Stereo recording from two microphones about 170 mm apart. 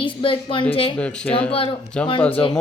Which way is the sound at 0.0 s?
30° left (ahead or behind).